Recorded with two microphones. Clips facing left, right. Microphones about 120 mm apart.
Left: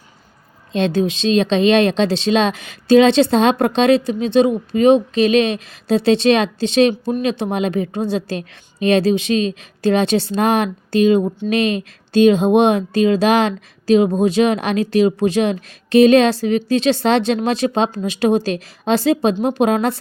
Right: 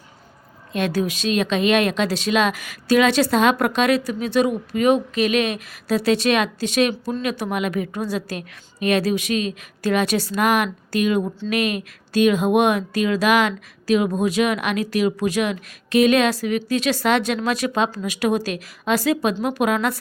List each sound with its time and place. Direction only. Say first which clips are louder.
0.7 s speech: left 5 dB; 25° left (ahead or behind)